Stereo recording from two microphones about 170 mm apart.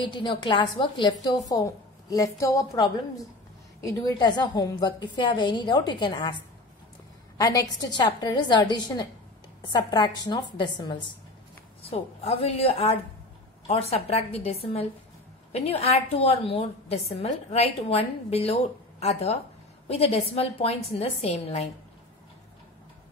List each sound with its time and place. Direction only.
0.0 s a woman's voice: 30° left (ahead or behind)
7.3 s a woman's voice: 20° left (ahead or behind)
12.2 s a woman's voice: 40° left (ahead or behind)